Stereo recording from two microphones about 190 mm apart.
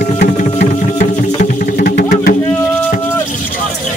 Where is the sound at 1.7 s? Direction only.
50° left (ahead or behind).